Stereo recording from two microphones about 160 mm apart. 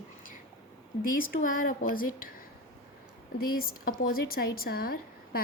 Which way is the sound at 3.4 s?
65° left (ahead or behind).